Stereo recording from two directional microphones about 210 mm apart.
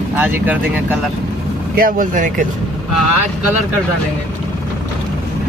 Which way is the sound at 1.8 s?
40° right (ahead or behind).